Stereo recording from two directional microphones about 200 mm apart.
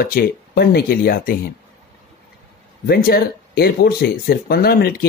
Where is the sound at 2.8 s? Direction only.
50° left (ahead or behind).